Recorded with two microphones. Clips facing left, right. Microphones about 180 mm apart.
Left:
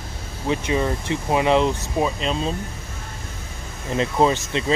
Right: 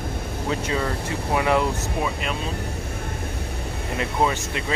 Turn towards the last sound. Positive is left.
turn(degrees=25)  # may be behind; listen again after turning